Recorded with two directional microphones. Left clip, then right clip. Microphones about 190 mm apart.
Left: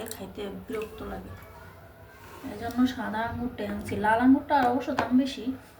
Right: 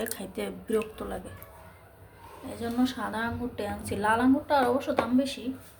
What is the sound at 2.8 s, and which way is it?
A woman's voice, 40° right (ahead or behind).